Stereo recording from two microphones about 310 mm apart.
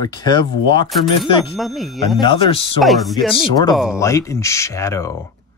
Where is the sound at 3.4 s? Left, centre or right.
Centre.